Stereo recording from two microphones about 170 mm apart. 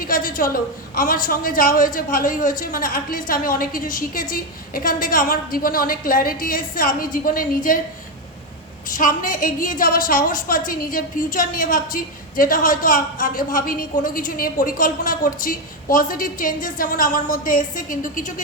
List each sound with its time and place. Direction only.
0.0 s a woman's voice: 55° left (ahead or behind)
9.0 s a woman's voice: 50° left (ahead or behind)